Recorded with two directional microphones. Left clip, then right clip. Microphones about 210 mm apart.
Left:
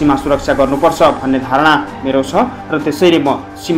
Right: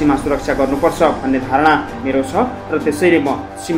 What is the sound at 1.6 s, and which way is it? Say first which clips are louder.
Speech: left 2 dB; 25° left (ahead or behind).